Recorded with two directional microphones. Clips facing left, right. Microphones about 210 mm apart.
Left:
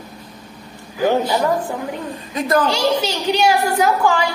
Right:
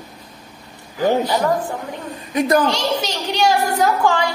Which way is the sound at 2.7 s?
10° left (ahead or behind).